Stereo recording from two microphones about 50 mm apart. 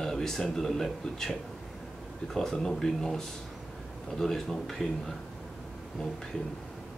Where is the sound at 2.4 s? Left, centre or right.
Centre.